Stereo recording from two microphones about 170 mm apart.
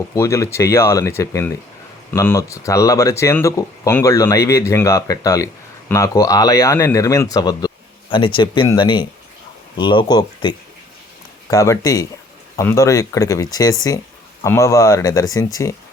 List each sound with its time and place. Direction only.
0.1 s speech: 20° left (ahead or behind)
11.5 s speech: 20° left (ahead or behind)